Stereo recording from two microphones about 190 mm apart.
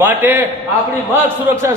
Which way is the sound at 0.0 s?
10° right (ahead or behind).